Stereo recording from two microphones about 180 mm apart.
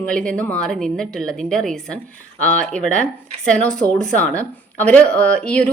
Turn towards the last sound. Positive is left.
turn(degrees=5)  # may be behind; listen again after turning